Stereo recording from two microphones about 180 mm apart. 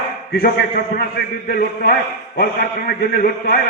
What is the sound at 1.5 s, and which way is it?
A man's voice, 55° left (ahead or behind).